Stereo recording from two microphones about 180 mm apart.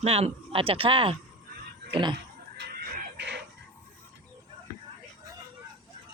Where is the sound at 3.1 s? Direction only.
75° right (ahead or behind).